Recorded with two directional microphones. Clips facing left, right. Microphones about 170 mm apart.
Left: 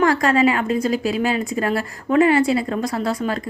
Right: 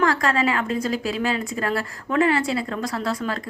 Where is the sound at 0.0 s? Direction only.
20° left (ahead or behind).